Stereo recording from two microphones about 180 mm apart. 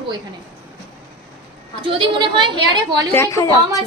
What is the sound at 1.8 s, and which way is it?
Speech, 25° right (ahead or behind).